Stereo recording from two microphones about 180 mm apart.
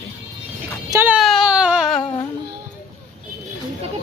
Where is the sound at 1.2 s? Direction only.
Centre (ahead or behind).